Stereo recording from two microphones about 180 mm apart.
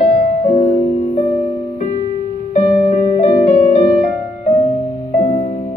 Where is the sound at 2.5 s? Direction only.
30° left (ahead or behind).